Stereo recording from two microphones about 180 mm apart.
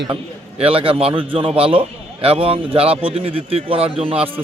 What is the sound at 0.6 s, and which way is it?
Speech, 30° right (ahead or behind).